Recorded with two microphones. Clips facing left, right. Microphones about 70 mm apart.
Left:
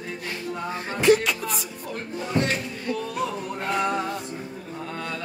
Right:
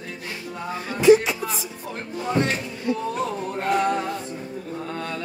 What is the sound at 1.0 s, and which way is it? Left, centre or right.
Music, left.